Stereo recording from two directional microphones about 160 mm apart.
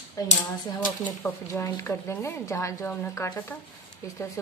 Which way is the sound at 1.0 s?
15° left (ahead or behind).